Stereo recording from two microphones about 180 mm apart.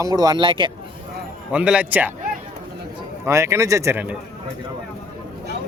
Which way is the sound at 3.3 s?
15° right (ahead or behind).